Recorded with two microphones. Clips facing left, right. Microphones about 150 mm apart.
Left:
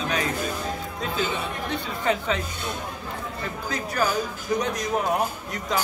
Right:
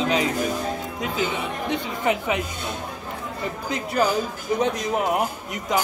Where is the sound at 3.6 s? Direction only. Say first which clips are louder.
Right 4 dB; 20° right (ahead or behind).